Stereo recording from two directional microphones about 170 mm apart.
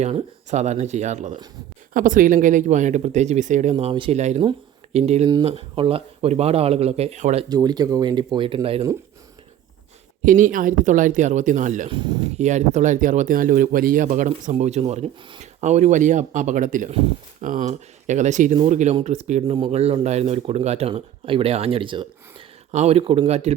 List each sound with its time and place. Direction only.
0.0 s speech: 40° right (ahead or behind)
7.5 s speech: 25° right (ahead or behind)
10.2 s speech: 50° right (ahead or behind)
11.9 s speech: 30° right (ahead or behind)
12.4 s speech: 45° right (ahead or behind)